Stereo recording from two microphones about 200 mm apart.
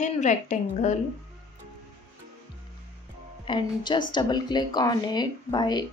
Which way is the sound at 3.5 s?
25° left (ahead or behind).